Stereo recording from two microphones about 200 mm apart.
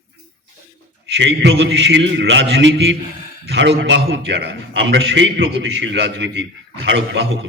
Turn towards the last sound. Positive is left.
turn(degrees=-60)  # may be behind; listen again after turning